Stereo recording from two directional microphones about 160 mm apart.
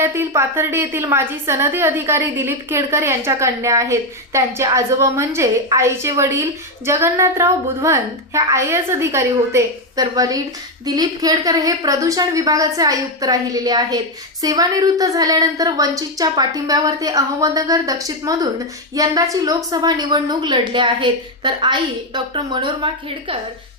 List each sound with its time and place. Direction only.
0.0 s a woman's voice: 15° right (ahead or behind)